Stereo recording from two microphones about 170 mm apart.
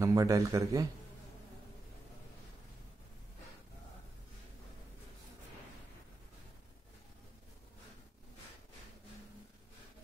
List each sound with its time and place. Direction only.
0.0 s speech: 20° right (ahead or behind)